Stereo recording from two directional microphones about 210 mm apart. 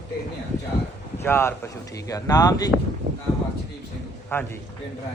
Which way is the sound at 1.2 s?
10° left (ahead or behind).